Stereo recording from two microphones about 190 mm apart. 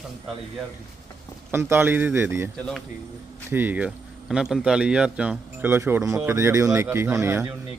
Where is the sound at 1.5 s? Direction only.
10° right (ahead or behind).